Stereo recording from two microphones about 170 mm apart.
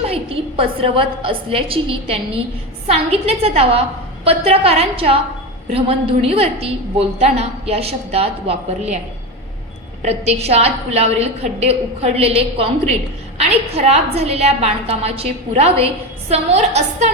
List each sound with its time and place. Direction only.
0.0 s a woman's voice: 35° right (ahead or behind)
10.0 s a woman's voice: 40° right (ahead or behind)